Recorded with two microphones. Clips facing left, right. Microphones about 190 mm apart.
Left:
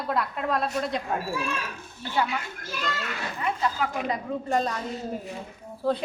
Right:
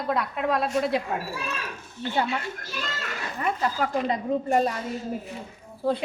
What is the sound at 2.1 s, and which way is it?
Speech, 30° right (ahead or behind).